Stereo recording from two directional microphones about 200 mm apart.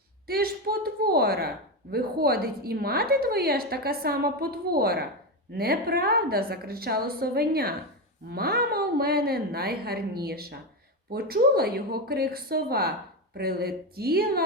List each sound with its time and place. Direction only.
0.3 s speech: 50° right (ahead or behind)